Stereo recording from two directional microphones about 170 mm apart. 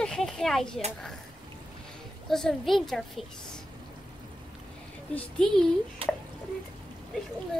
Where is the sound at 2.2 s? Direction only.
Centre (ahead or behind).